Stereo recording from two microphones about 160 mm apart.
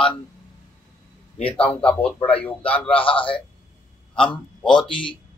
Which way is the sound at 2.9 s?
35° left (ahead or behind).